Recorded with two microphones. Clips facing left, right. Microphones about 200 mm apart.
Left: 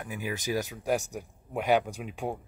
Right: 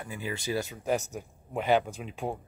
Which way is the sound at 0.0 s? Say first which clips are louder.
Left 1 dB; 15° left (ahead or behind).